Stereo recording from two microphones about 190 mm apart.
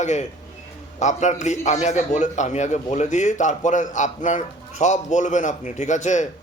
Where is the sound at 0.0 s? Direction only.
40° left (ahead or behind).